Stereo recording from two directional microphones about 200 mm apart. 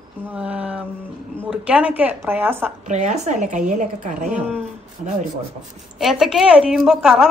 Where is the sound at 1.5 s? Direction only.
5° right (ahead or behind).